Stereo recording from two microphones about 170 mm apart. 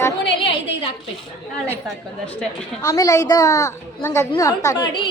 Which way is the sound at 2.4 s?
5° left (ahead or behind).